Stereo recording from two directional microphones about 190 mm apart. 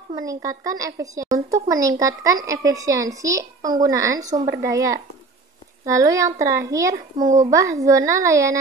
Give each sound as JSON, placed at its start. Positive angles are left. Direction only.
{"t": 0.1, "sound": "speech", "side_deg": -15}